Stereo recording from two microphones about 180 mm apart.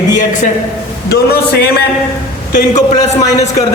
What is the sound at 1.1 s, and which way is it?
Speech, 60° left (ahead or behind).